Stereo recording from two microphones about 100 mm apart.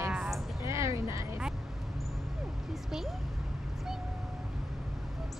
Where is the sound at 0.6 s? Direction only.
30° right (ahead or behind).